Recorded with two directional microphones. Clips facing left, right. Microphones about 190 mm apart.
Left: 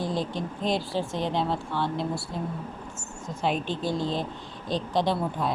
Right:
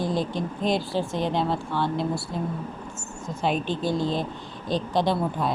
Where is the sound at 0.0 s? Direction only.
50° right (ahead or behind).